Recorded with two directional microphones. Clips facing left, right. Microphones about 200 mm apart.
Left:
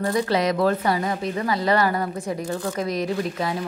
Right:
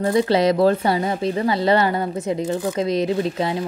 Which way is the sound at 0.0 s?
25° right (ahead or behind).